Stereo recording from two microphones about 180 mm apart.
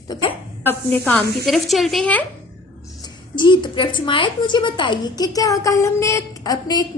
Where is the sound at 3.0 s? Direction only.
25° left (ahead or behind).